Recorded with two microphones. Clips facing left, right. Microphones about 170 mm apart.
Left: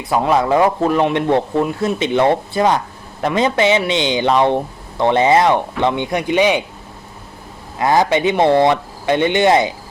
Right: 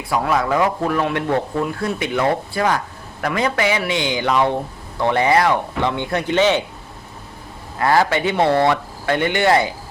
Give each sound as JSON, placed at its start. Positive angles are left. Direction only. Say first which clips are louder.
{"t": 0.0, "sound": "speech", "louder": "left 4 dB", "side_deg": 25}
{"t": 7.8, "sound": "speech", "louder": "left 2 dB", "side_deg": 20}